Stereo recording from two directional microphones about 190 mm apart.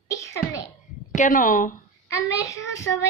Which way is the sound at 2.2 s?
15° left (ahead or behind).